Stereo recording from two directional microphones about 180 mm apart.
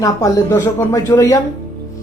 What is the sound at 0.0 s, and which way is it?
Speech, 15° left (ahead or behind).